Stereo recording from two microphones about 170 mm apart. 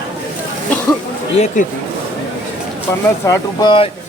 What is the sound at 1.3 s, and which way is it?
Speech, 40° left (ahead or behind).